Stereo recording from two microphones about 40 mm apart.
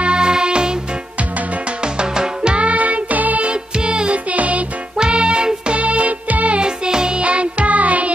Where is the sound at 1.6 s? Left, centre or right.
Right.